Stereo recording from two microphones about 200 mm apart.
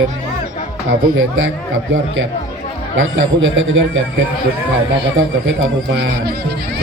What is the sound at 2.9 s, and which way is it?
A man's voice, 75° right (ahead or behind).